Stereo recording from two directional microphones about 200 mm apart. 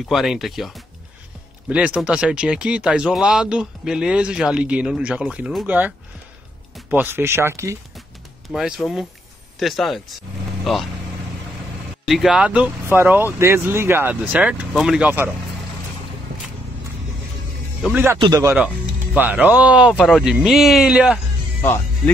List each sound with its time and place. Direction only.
0.0 s speech: centre (ahead or behind)
8.5 s speech: centre (ahead or behind)
12.1 s speech: centre (ahead or behind)
17.8 s speech: 10° right (ahead or behind)
21.6 s speech: 10° left (ahead or behind)